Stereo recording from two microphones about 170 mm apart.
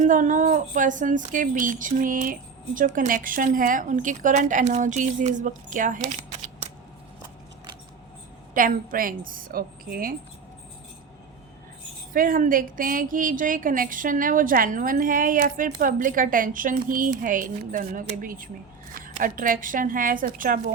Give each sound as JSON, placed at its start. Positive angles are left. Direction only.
{"t": 0.0, "sound": "speech", "side_deg": -50}
{"t": 8.5, "sound": "a woman's voice", "side_deg": -55}
{"t": 12.1, "sound": "speech", "side_deg": -55}